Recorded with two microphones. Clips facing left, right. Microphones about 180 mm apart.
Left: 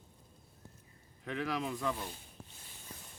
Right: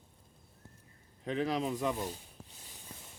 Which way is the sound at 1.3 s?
25° right (ahead or behind).